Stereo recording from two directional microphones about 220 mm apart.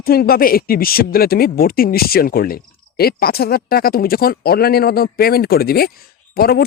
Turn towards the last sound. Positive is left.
turn(degrees=45)  # may be behind; listen again after turning